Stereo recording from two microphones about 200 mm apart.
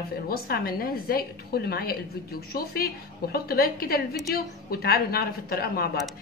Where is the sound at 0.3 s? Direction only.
50° left (ahead or behind).